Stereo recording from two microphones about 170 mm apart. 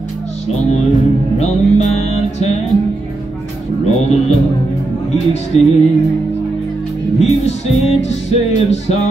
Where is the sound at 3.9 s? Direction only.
40° left (ahead or behind).